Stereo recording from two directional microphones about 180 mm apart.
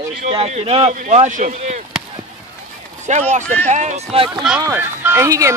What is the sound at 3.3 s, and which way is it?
Speech, 45° right (ahead or behind).